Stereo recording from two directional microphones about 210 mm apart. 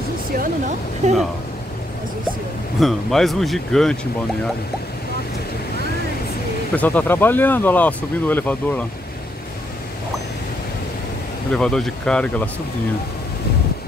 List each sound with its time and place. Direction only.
0.4 s speech: 35° right (ahead or behind)
2.8 s speech: centre (ahead or behind)
6.7 s speech: 10° left (ahead or behind)
11.5 s speech: 5° left (ahead or behind)